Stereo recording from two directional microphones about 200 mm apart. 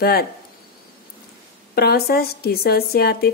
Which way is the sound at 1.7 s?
50° left (ahead or behind).